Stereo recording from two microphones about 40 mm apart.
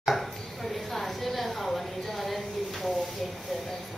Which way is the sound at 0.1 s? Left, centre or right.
Centre.